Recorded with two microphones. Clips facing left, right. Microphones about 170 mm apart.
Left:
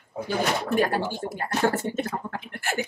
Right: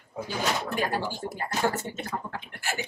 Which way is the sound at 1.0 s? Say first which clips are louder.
Left 3 dB; 50° left (ahead or behind).